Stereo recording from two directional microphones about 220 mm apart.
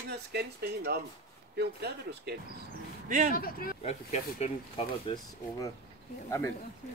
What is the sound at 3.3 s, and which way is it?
Speech, 40° left (ahead or behind).